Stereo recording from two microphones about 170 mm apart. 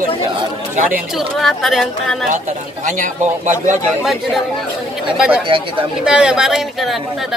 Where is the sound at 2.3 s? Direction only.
50° right (ahead or behind).